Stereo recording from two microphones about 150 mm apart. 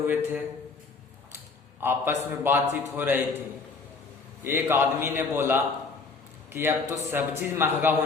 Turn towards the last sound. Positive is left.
turn(degrees=-15)  # may be behind; listen again after turning